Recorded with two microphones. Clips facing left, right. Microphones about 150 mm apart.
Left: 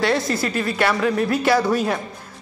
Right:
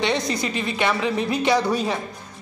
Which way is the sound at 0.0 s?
20° right (ahead or behind).